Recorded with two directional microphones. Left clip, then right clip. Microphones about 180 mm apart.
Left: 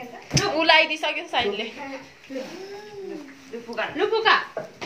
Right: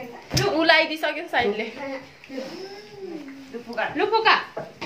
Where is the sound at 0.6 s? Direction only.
25° right (ahead or behind).